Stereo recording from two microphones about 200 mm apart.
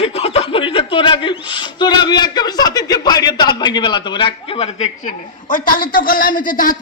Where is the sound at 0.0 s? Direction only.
30° left (ahead or behind).